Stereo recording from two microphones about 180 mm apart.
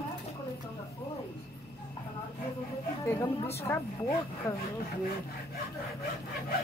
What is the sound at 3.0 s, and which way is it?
A woman's voice, 15° left (ahead or behind).